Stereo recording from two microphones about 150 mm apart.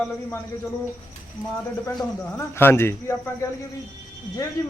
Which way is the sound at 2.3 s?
15° left (ahead or behind).